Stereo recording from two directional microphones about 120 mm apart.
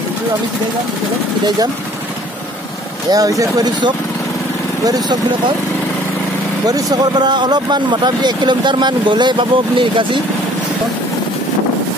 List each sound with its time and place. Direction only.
3.1 s speech: 30° right (ahead or behind)
6.7 s speech: 35° right (ahead or behind)